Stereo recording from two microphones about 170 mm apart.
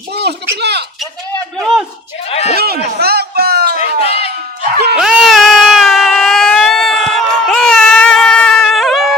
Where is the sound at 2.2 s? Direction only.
40° left (ahead or behind).